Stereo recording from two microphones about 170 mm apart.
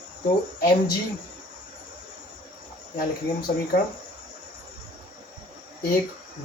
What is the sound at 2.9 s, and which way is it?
Speech, 60° left (ahead or behind).